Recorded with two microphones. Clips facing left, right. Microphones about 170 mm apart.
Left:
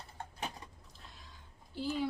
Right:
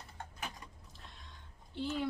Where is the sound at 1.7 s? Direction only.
5° left (ahead or behind).